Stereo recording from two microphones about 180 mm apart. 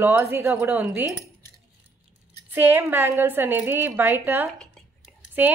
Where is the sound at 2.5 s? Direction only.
10° right (ahead or behind).